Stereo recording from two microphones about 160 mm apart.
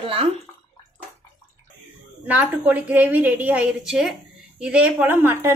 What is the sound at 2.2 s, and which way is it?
A woman's voice, 10° right (ahead or behind).